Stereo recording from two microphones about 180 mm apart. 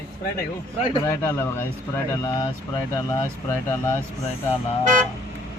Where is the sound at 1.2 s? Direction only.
15° left (ahead or behind).